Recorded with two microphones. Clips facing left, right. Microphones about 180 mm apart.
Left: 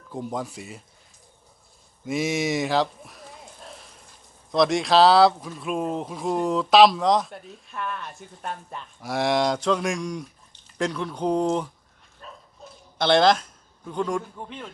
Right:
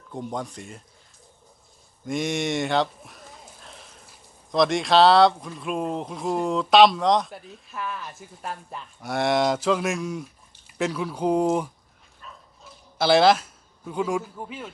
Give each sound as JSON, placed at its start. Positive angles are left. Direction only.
{"t": 0.1, "sound": "speech", "side_deg": 0}
{"t": 2.0, "sound": "a sound", "side_deg": 5}
{"t": 4.5, "sound": "speech", "side_deg": 0}
{"t": 12.2, "sound": "dog", "side_deg": 40}
{"t": 13.0, "sound": "speech", "side_deg": -5}